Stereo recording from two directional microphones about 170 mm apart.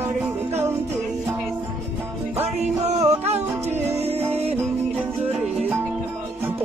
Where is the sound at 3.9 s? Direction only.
35° right (ahead or behind).